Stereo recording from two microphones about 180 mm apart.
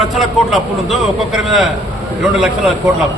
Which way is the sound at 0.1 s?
Centre (ahead or behind).